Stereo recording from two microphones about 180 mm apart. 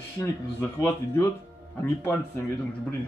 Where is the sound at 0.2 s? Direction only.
15° left (ahead or behind).